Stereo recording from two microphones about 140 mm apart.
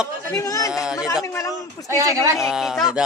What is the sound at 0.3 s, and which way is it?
Speech, 25° left (ahead or behind).